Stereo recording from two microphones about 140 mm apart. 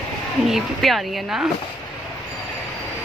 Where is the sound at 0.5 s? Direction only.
Centre (ahead or behind).